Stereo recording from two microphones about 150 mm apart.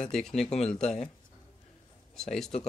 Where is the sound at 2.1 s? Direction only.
5° left (ahead or behind).